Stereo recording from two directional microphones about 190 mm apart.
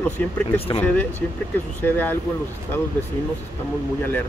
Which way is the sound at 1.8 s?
10° left (ahead or behind).